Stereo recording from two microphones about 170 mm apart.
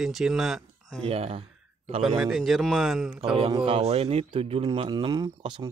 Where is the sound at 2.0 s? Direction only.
Centre (ahead or behind).